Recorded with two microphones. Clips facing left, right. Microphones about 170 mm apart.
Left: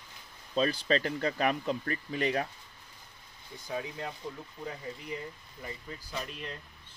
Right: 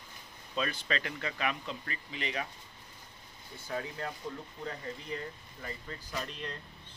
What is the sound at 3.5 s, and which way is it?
Speech, 15° left (ahead or behind).